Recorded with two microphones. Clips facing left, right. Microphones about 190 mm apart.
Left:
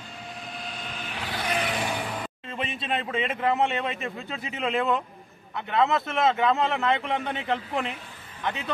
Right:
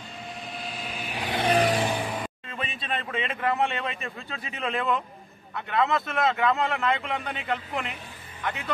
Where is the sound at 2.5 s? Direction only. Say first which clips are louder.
Left 4 dB; 25° left (ahead or behind).